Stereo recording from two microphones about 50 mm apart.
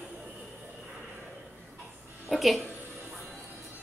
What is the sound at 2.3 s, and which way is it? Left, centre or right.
Speech, centre.